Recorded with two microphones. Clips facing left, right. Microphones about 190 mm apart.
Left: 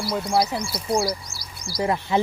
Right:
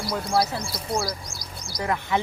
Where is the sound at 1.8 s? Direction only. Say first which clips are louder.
Left 3 dB; 25° left (ahead or behind).